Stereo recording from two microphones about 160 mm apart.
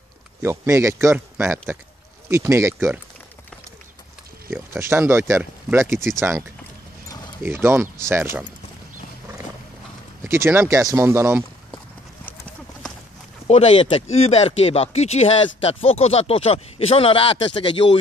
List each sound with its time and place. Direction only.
0.4 s a man's voice: 15° right (ahead or behind)
4.5 s a man's voice: 15° right (ahead or behind)
5.9 s speech: 5° left (ahead or behind)
7.4 s a man's voice: 15° right (ahead or behind)
10.2 s a man's voice: 15° right (ahead or behind)
13.5 s speech: 40° left (ahead or behind)